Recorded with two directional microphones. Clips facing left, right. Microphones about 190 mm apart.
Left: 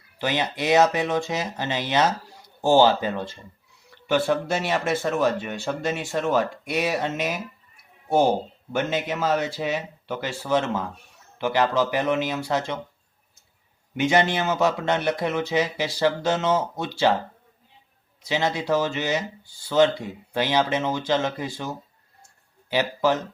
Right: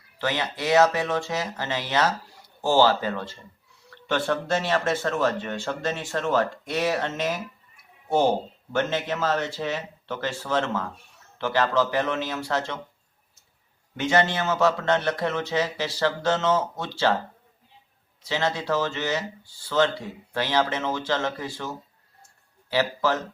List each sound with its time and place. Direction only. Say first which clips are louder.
0.2 s speech: left 2 dB; 15° left (ahead or behind)
8.7 s speech: even; 15° left (ahead or behind)
13.9 s speech: left 2 dB; 15° left (ahead or behind)
18.2 s speech: left 2 dB; 15° left (ahead or behind)